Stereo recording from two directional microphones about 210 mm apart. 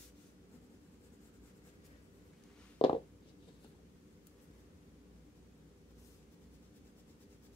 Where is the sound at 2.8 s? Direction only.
25° left (ahead or behind).